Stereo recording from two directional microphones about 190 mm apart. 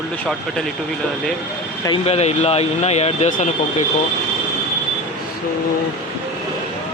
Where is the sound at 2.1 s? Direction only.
35° left (ahead or behind).